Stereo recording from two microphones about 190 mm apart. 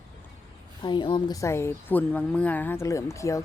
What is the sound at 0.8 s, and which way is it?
Speech, 25° left (ahead or behind).